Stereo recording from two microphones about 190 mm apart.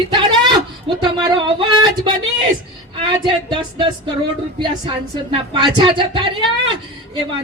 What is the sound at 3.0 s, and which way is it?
Speech, 25° right (ahead or behind).